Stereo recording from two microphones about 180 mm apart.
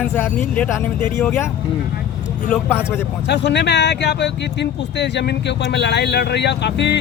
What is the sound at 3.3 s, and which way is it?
Speech, 70° left (ahead or behind).